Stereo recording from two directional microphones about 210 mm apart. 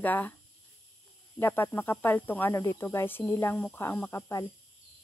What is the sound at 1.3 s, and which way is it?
Speech, 10° left (ahead or behind).